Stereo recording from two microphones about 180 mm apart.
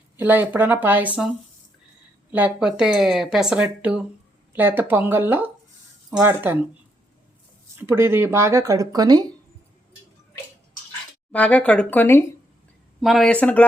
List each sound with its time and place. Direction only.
0.2 s speech: 10° right (ahead or behind)
2.3 s speech: 5° right (ahead or behind)
7.8 s speech: 15° right (ahead or behind)
11.3 s speech: 10° left (ahead or behind)
13.0 s speech: centre (ahead or behind)